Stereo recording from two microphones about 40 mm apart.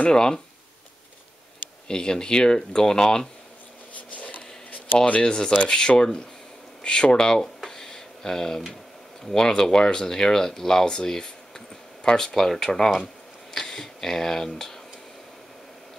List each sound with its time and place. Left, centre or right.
0.1 s speech: centre
1.9 s speech: centre
5.2 s speech: left
7.6 s tick: centre
9.2 s speech: centre